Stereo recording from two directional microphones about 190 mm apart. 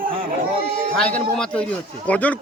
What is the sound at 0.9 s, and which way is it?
A man's voice, 5° left (ahead or behind).